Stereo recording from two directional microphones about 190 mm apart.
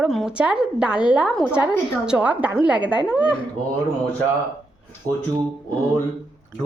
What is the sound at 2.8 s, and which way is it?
Speech, 25° left (ahead or behind).